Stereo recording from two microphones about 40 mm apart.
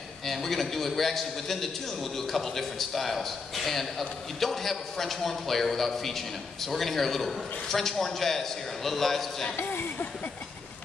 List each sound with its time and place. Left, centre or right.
0.2 s a man's voice: centre
9.7 s speech: left